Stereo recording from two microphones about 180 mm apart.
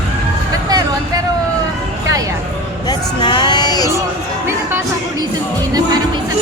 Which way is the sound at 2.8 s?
25° left (ahead or behind).